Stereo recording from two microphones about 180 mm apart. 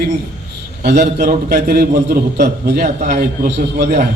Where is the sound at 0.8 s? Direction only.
65° right (ahead or behind).